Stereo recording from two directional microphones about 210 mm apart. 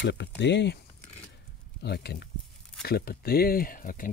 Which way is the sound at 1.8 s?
50° left (ahead or behind).